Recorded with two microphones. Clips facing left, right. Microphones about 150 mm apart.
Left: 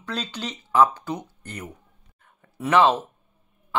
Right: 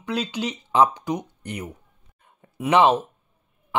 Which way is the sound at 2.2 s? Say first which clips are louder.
Right 2 dB; 15° right (ahead or behind).